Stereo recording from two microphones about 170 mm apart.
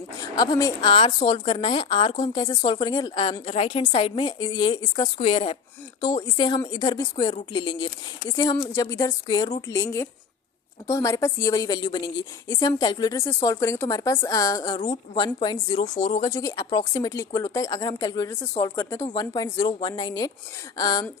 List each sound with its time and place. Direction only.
0.2 s a woman's voice: 25° left (ahead or behind)